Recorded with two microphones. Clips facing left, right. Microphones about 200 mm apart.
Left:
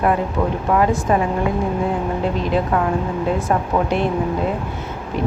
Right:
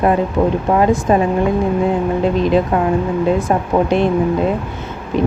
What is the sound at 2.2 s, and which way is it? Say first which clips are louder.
A woman's voice: right 6 dB; 20° right (ahead or behind).